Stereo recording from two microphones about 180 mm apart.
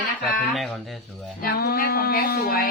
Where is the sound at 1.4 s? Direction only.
55° left (ahead or behind).